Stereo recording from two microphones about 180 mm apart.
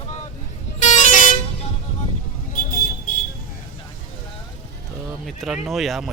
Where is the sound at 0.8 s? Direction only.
40° left (ahead or behind).